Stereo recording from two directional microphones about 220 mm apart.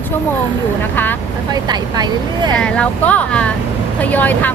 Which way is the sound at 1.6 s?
20° right (ahead or behind).